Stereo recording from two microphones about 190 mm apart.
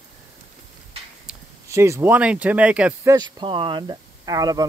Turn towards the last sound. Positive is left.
turn(degrees=-20)  # may be behind; listen again after turning